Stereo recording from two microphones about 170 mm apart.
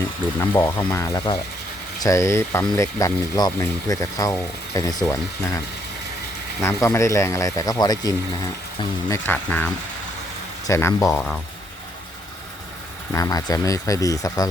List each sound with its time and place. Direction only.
0.3 s speech: 15° left (ahead or behind)
6.6 s speech: 15° left (ahead or behind)
9.0 s speech: 10° left (ahead or behind)
13.1 s speech: 20° left (ahead or behind)